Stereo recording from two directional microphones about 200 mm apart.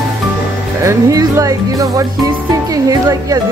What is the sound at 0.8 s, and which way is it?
Speech, 15° right (ahead or behind).